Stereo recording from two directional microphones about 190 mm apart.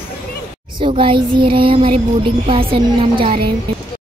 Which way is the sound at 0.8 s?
25° right (ahead or behind).